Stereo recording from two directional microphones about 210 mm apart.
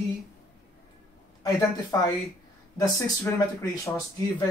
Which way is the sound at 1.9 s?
15° left (ahead or behind).